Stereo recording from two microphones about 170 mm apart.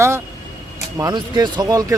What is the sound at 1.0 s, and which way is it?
Speech, 25° right (ahead or behind).